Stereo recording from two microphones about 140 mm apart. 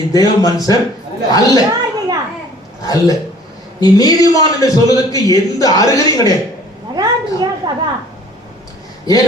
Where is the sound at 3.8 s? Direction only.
25° left (ahead or behind).